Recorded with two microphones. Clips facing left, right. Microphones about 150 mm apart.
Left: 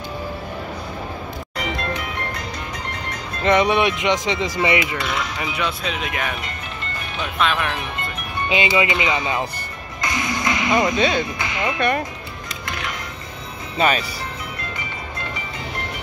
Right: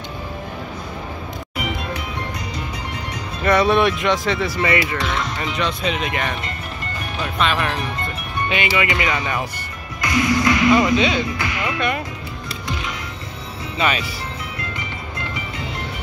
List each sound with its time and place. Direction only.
3.4 s speech: 20° left (ahead or behind)
4.9 s speech: centre (ahead or behind)
7.3 s speech: centre (ahead or behind)
8.5 s speech: 20° left (ahead or behind)
10.0 s music: 20° left (ahead or behind)
11.0 s speech: 45° left (ahead or behind)
11.3 s speech: 20° left (ahead or behind)
13.7 s speech: 40° left (ahead or behind)